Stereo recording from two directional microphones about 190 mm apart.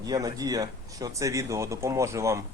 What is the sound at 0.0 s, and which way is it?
Speech, 20° right (ahead or behind).